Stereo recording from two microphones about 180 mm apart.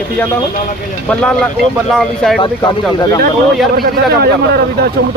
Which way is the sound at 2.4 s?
25° left (ahead or behind).